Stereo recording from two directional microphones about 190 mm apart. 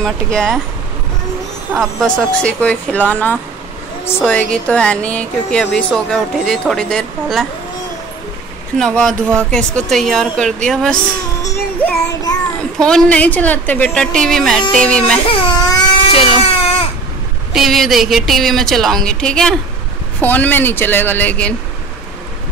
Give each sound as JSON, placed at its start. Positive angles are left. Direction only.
{"t": 0.0, "sound": "speech", "side_deg": 5}
{"t": 1.7, "sound": "a woman's voice", "side_deg": 0}
{"t": 8.7, "sound": "speech", "side_deg": 5}
{"t": 11.4, "sound": "child singing", "side_deg": 20}
{"t": 12.7, "sound": "speech", "side_deg": 5}
{"t": 15.2, "sound": "speech", "side_deg": 30}
{"t": 16.5, "sound": "baby cry", "side_deg": 30}
{"t": 17.6, "sound": "a woman's voice", "side_deg": 0}